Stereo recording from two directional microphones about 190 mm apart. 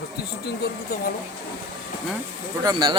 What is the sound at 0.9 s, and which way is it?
Speech, 50° left (ahead or behind).